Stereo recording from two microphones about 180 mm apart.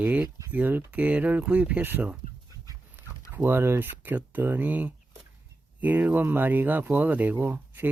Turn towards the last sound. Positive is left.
turn(degrees=-10)  # may be behind; listen again after turning